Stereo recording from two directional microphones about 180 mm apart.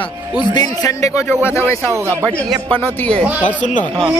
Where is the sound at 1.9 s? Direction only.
15° right (ahead or behind).